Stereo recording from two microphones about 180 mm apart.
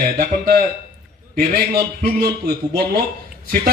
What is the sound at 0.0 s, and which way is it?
A man's voice, 55° right (ahead or behind).